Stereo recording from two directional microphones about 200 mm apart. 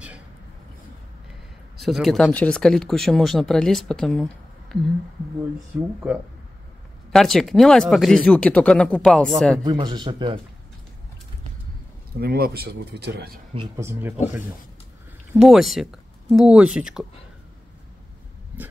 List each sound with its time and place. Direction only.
1.8 s speech: centre (ahead or behind)
6.0 s speech: 10° right (ahead or behind)
9.6 s speech: 20° right (ahead or behind)
12.2 s speech: 50° right (ahead or behind)
13.7 s speech: 10° right (ahead or behind)
15.3 s speech: centre (ahead or behind)